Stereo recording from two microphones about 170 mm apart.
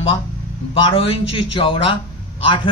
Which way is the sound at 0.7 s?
35° left (ahead or behind).